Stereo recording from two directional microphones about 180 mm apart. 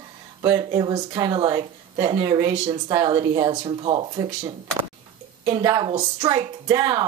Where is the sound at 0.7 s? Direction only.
25° right (ahead or behind).